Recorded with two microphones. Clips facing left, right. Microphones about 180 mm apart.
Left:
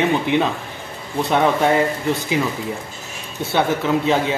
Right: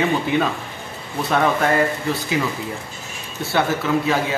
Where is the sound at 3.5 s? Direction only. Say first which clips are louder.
Left 1 dB; 20° left (ahead or behind).